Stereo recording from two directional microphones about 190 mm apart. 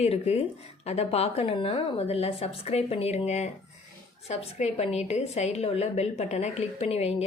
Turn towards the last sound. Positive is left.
turn(degrees=35)  # may be behind; listen again after turning